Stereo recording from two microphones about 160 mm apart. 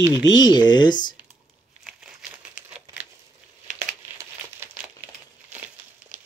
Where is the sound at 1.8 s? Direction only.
5° right (ahead or behind).